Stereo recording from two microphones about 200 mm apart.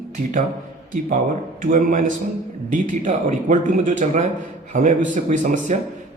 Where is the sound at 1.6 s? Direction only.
40° right (ahead or behind).